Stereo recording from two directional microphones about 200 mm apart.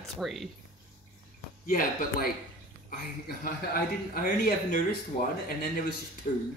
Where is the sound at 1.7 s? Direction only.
45° left (ahead or behind).